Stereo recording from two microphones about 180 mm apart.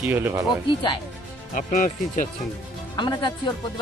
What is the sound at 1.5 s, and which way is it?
Speech, 45° left (ahead or behind).